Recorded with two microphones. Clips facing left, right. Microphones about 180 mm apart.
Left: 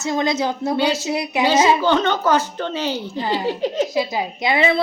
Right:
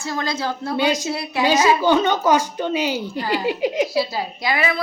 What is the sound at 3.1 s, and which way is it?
Speech, 20° left (ahead or behind).